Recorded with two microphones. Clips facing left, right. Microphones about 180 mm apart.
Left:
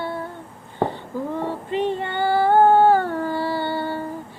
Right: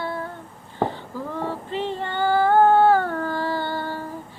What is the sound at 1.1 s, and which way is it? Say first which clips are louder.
Female singing: left 4 dB; 20° left (ahead or behind).